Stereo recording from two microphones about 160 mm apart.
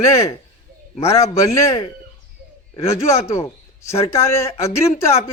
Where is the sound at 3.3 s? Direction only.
20° left (ahead or behind).